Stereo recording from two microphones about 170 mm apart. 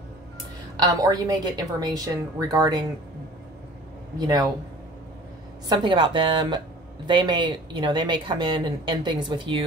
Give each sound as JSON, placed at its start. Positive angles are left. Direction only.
{"t": 0.7, "sound": "speech", "side_deg": -20}
{"t": 4.2, "sound": "speech", "side_deg": -20}
{"t": 5.7, "sound": "speech", "side_deg": -30}